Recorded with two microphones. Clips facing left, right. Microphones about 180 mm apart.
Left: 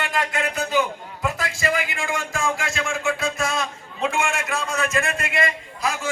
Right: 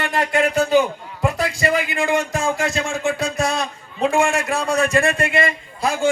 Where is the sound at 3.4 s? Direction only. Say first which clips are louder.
Right 3 dB; 35° right (ahead or behind).